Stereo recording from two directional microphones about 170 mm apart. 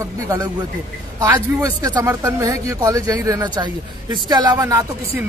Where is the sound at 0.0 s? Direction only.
20° right (ahead or behind).